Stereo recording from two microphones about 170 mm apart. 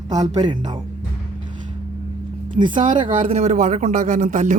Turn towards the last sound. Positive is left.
turn(degrees=-45)  # may be behind; listen again after turning